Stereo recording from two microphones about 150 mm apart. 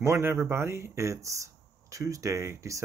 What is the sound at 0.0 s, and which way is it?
Speech, 15° right (ahead or behind).